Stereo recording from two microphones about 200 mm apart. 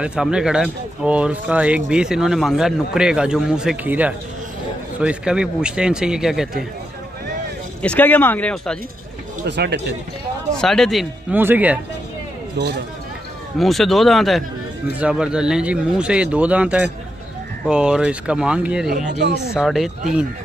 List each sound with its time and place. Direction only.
0.0 s speech: 5° right (ahead or behind)
7.8 s speech: 5° left (ahead or behind)
9.5 s speech: 60° right (ahead or behind)
10.5 s speech: 5° left (ahead or behind)
13.6 s speech: centre (ahead or behind)
18.9 s speech: 55° right (ahead or behind)
19.5 s speech: centre (ahead or behind)